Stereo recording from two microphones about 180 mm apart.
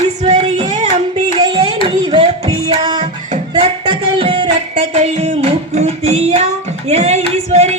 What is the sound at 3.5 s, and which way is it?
Music, 25° right (ahead or behind).